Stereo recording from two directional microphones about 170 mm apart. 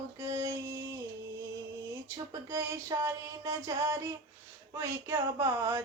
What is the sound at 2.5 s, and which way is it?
Music, 15° right (ahead or behind).